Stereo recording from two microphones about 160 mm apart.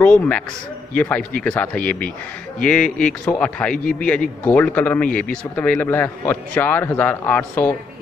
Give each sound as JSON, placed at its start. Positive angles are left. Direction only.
{"t": 0.0, "sound": "a man's voice", "side_deg": 5}
{"t": 3.7, "sound": "a man's voice", "side_deg": 55}
{"t": 4.5, "sound": "a man's voice", "side_deg": 10}